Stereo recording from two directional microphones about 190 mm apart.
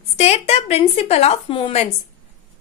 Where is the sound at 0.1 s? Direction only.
35° left (ahead or behind).